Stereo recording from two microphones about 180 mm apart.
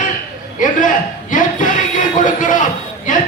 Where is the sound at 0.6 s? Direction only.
45° left (ahead or behind).